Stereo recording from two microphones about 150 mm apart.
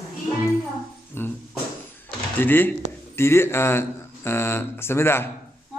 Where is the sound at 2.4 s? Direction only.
15° left (ahead or behind).